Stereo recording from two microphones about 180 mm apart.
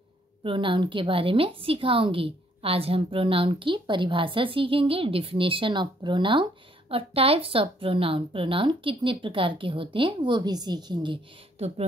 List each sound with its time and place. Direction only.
0.4 s a woman's voice: 30° right (ahead or behind)